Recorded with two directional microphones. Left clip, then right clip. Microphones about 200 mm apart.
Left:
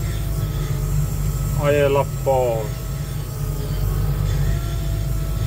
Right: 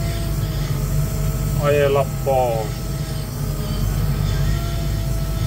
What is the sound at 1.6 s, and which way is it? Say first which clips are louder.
Speech: even; 25° left (ahead or behind).